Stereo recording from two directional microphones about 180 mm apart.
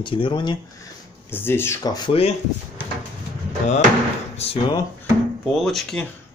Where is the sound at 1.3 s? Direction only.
10° left (ahead or behind); by 2.3 s 30° left (ahead or behind).